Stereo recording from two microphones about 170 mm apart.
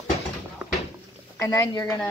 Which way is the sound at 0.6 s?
5° right (ahead or behind).